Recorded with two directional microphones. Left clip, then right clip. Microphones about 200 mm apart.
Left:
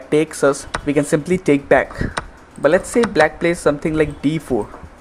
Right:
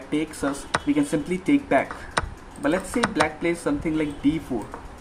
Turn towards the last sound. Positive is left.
turn(degrees=45)  # may be behind; listen again after turning